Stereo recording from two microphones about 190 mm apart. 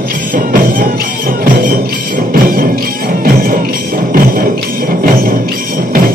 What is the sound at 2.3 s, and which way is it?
Music, 50° right (ahead or behind).